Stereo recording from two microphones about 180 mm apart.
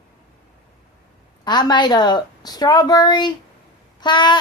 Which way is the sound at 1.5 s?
25° left (ahead or behind).